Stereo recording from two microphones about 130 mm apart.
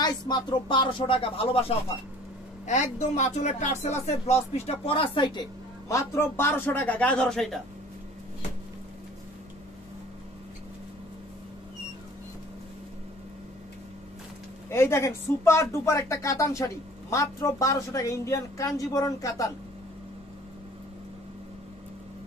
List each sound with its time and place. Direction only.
0.0 s speech: 35° left (ahead or behind)
2.6 s speech: 65° left (ahead or behind); by 7.6 s centre (ahead or behind)
14.7 s speech: 20° left (ahead or behind)